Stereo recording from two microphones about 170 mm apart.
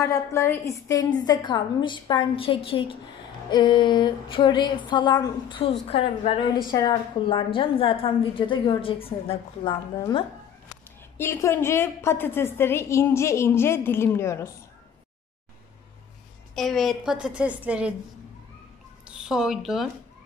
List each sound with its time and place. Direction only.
0.0 s a woman's voice: 15° left (ahead or behind); by 9.8 s 35° left (ahead or behind)
9.9 s a woman's voice: 20° left (ahead or behind)
16.5 s a woman's voice: centre (ahead or behind)
19.0 s speech: 5° right (ahead or behind)